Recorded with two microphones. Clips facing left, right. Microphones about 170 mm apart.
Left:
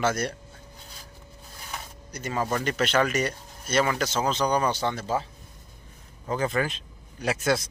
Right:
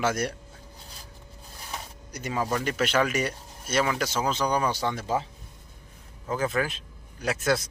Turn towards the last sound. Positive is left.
turn(degrees=0)  # may be behind; listen again after turning